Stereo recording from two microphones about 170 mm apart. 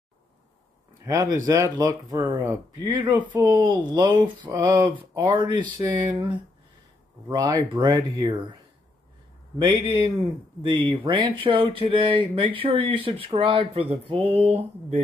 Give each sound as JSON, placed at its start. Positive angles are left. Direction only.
{"t": 1.0, "sound": "speech", "side_deg": -20}
{"t": 7.2, "sound": "speech", "side_deg": -20}
{"t": 9.6, "sound": "speech", "side_deg": -20}